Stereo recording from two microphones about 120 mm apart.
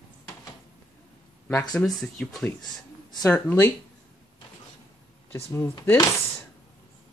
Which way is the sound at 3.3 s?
15° left (ahead or behind).